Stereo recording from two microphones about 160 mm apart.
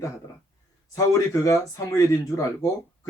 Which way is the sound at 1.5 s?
20° left (ahead or behind).